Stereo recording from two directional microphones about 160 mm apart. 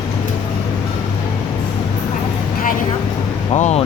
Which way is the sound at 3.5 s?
45° left (ahead or behind).